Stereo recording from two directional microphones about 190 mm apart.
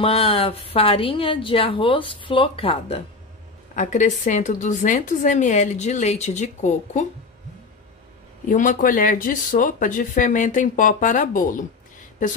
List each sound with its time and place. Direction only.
0.0 s a woman's voice: 30° left (ahead or behind)
8.5 s speech: 45° left (ahead or behind)